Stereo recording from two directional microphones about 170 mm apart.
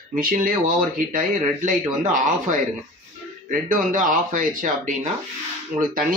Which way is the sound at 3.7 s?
50° right (ahead or behind).